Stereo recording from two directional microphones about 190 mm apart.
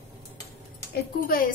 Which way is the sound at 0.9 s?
50° left (ahead or behind).